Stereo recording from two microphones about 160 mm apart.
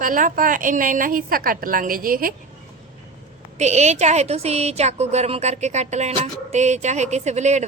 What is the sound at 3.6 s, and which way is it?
A woman's voice, 45° right (ahead or behind).